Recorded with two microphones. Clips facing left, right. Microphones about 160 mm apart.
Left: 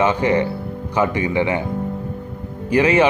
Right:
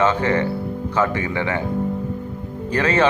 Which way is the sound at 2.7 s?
10° left (ahead or behind).